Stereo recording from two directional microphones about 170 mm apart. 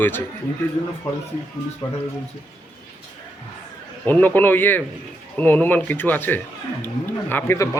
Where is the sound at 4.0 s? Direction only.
10° left (ahead or behind).